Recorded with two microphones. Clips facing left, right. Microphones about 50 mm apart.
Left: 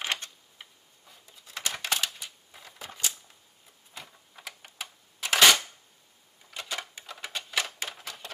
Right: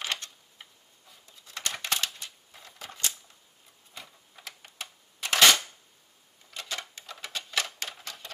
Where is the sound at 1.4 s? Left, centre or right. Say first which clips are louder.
Left 1 dB; centre.